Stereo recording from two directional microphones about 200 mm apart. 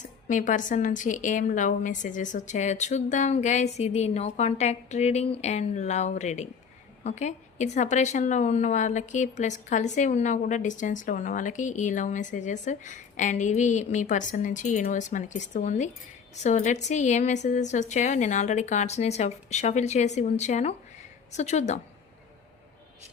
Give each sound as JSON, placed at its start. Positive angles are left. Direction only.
{"t": 0.3, "sound": "a woman's voice", "side_deg": 40}